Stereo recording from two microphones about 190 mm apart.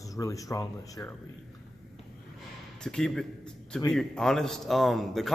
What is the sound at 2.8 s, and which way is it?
A man's voice, 5° left (ahead or behind).